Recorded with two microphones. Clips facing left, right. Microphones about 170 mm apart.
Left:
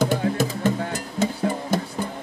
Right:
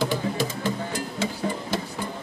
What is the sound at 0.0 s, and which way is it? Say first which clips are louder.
Music: left 4 dB; 50° left (ahead or behind).